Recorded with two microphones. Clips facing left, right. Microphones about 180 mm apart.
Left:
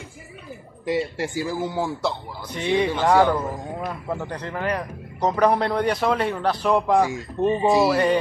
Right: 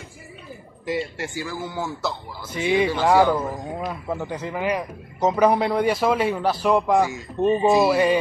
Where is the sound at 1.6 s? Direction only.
25° left (ahead or behind).